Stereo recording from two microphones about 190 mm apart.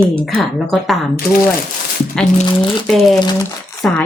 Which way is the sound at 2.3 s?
25° left (ahead or behind).